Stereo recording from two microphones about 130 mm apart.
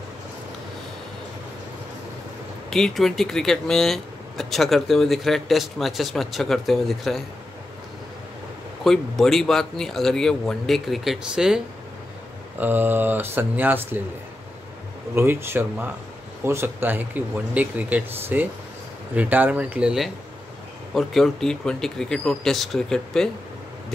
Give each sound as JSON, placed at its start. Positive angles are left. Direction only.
{"t": 2.7, "sound": "speech", "side_deg": 5}
{"t": 8.8, "sound": "speech", "side_deg": 0}
{"t": 15.1, "sound": "speech", "side_deg": -20}